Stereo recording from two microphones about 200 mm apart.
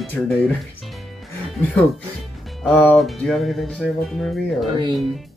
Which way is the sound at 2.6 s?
5° left (ahead or behind).